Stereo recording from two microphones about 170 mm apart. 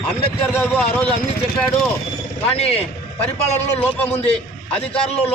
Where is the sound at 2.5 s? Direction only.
35° left (ahead or behind).